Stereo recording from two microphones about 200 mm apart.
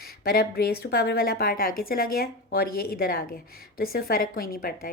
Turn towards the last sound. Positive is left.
turn(degrees=45)  # may be behind; listen again after turning